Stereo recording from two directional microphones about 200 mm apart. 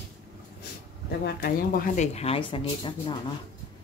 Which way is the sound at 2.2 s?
30° left (ahead or behind).